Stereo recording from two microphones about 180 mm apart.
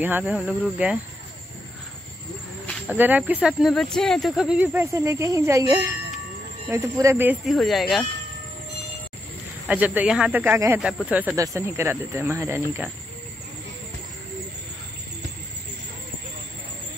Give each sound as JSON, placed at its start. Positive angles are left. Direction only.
{"t": 0.0, "sound": "speech", "side_deg": -10}
{"t": 2.9, "sound": "speech", "side_deg": -10}
{"t": 7.4, "sound": "speech", "side_deg": 0}
{"t": 9.7, "sound": "speech", "side_deg": -10}